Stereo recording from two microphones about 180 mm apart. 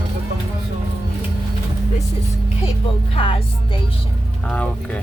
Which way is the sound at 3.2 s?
30° left (ahead or behind).